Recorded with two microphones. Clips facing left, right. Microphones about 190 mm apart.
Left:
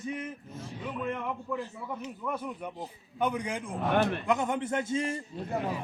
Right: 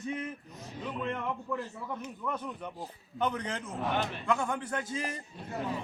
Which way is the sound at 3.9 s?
55° left (ahead or behind).